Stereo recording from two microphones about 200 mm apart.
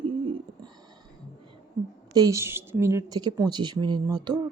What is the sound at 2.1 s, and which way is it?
Speech, 15° right (ahead or behind).